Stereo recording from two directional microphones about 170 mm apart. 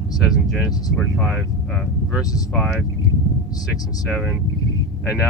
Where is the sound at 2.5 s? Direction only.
Centre (ahead or behind).